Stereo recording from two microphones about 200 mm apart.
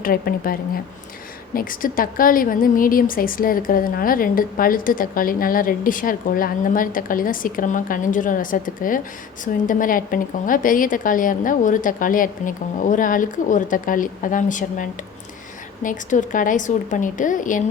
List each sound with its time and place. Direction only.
0.0 s a woman's voice: 45° left (ahead or behind)